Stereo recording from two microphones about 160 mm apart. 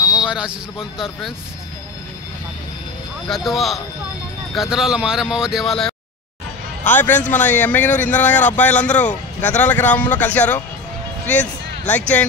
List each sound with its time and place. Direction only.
0.0 s a sound: 25° left (ahead or behind)
0.3 s speech: 5° right (ahead or behind)
3.3 s speech: centre (ahead or behind)
6.8 s a man's voice: 10° left (ahead or behind)